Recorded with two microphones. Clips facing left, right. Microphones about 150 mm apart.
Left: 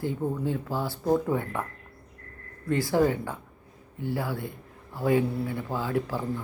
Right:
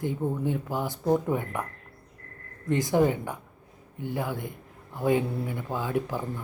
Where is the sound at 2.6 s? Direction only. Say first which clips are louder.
Even; 20° right (ahead or behind).